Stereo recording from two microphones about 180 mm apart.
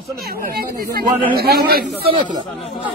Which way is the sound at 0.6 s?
55° right (ahead or behind).